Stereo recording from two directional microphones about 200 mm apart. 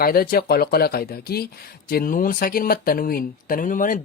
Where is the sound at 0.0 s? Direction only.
50° left (ahead or behind).